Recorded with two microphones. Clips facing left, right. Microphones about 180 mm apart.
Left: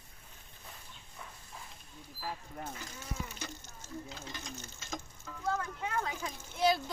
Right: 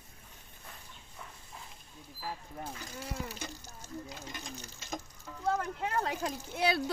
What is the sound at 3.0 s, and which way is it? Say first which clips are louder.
Water: right 3 dB; 35° right (ahead or behind).